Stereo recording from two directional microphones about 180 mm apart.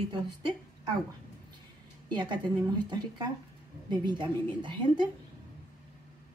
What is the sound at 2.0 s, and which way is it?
A woman's voice, 25° right (ahead or behind).